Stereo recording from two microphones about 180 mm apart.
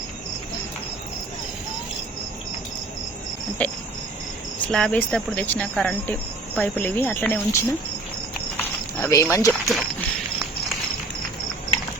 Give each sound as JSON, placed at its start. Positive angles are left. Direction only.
{"t": 3.6, "sound": "speech", "side_deg": 10}
{"t": 8.5, "sound": "a sound", "side_deg": 15}
{"t": 9.5, "sound": "speech", "side_deg": 0}